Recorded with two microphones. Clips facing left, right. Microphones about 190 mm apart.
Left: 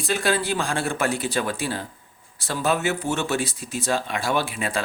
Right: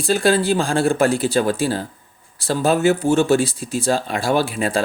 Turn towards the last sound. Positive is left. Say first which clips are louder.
# right 6 dB
turn(degrees=-35)  # may be behind; listen again after turning